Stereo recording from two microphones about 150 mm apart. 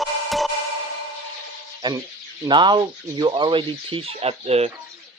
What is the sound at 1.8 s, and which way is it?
Speech, 25° right (ahead or behind).